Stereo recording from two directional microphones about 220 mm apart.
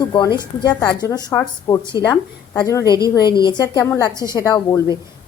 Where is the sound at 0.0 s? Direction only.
20° left (ahead or behind).